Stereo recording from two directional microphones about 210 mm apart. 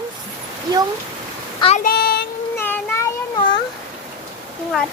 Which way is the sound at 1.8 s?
45° left (ahead or behind).